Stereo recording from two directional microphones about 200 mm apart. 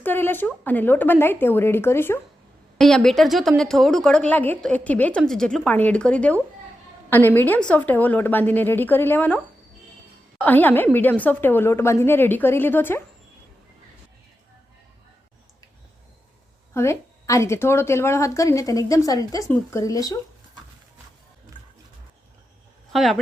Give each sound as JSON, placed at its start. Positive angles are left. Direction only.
{"t": 0.0, "sound": "a woman's voice", "side_deg": 10}
{"t": 16.7, "sound": "a woman's voice", "side_deg": 15}
{"t": 22.9, "sound": "speech", "side_deg": 0}